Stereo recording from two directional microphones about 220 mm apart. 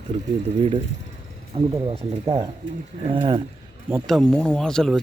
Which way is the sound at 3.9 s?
Centre (ahead or behind).